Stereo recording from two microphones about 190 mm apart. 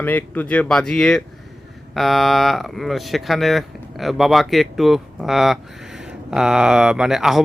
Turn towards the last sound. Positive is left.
turn(degrees=0)  # may be behind; listen again after turning